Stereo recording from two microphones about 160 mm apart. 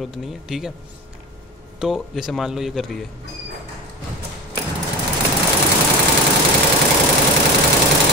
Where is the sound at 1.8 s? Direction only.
Centre (ahead or behind).